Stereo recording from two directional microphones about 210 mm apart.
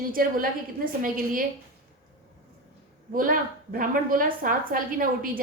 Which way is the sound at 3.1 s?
40° right (ahead or behind).